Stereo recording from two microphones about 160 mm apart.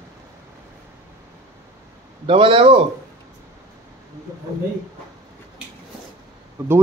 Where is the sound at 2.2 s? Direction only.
35° right (ahead or behind).